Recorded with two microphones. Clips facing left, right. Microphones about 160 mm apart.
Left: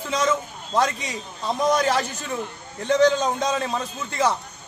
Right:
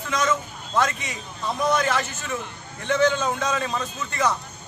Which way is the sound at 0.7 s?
35° left (ahead or behind).